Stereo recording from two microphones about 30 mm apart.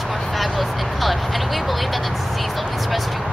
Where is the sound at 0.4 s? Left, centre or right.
Centre.